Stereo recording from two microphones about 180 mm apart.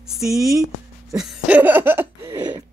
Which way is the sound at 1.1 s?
5° right (ahead or behind).